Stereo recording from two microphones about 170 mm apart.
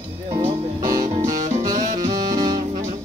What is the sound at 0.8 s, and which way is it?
Music, 20° right (ahead or behind).